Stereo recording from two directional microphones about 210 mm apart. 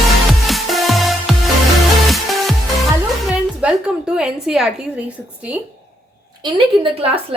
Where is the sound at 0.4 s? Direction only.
Centre (ahead or behind).